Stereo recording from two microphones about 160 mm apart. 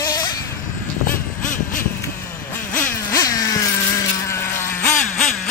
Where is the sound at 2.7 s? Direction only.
15° left (ahead or behind).